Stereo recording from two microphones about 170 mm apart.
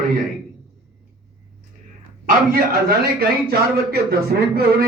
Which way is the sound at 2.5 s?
65° right (ahead or behind).